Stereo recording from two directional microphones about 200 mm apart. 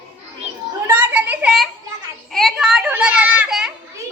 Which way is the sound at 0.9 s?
10° right (ahead or behind).